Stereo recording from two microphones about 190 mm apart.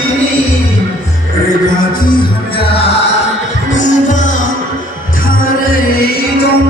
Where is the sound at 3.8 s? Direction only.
40° left (ahead or behind).